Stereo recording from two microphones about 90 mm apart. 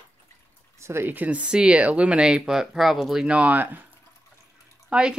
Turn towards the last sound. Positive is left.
turn(degrees=-10)  # may be behind; listen again after turning